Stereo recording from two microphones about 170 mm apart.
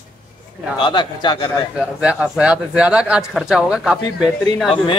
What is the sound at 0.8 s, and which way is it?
Speech, 25° left (ahead or behind).